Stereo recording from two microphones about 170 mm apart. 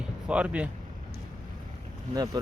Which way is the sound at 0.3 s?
5° right (ahead or behind).